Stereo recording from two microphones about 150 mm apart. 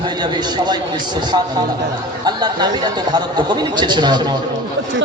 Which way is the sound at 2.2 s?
30° right (ahead or behind).